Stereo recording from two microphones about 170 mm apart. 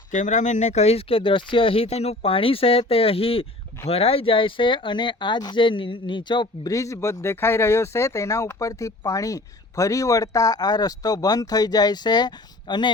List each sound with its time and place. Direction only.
0.1 s speech: 45° left (ahead or behind); by 12.9 s 25° left (ahead or behind)